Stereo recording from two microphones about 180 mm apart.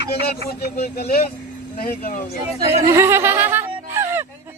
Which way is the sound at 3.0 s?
15° right (ahead or behind).